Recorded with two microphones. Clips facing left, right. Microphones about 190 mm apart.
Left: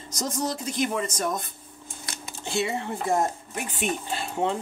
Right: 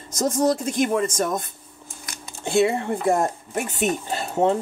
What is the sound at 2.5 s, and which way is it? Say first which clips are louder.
Speech: right 8 dB; 55° right (ahead or behind).